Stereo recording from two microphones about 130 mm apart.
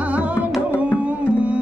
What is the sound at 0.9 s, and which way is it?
Music, 10° right (ahead or behind).